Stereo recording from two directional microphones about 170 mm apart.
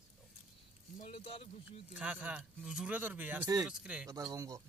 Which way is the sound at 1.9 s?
10° right (ahead or behind).